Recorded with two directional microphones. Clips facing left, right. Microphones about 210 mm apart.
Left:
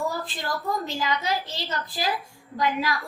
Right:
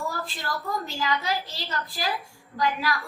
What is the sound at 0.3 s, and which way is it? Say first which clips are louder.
A woman's voice: left 2 dB; 20° left (ahead or behind).